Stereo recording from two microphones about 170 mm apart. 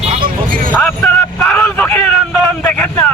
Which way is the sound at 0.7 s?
10° left (ahead or behind).